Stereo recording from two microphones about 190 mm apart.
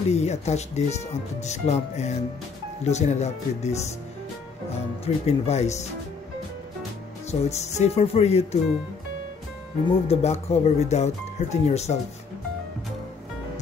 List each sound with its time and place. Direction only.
0.1 s speech: 35° left (ahead or behind)
5.0 s speech: 35° left (ahead or behind)
7.2 s speech: 35° left (ahead or behind)
10.0 s speech: 35° left (ahead or behind)